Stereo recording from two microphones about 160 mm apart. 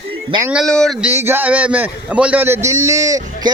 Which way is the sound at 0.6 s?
5° left (ahead or behind).